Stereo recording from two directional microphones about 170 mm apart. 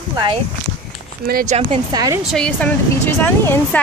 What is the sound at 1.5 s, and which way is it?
Speech, 40° right (ahead or behind).